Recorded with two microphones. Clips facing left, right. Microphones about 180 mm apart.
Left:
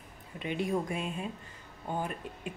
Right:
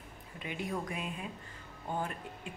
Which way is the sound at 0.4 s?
25° left (ahead or behind).